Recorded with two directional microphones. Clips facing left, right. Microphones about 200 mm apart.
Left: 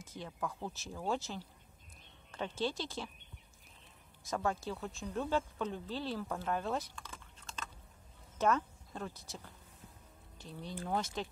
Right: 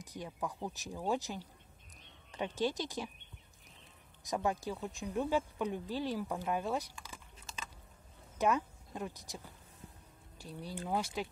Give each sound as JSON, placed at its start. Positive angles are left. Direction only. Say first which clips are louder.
{"t": 0.0, "sound": "speech", "louder": "right 1 dB", "side_deg": -15}
{"t": 4.2, "sound": "speech", "louder": "right 1 dB", "side_deg": -15}